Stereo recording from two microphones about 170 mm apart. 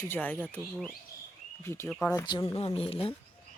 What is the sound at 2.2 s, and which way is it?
Speech, 25° left (ahead or behind).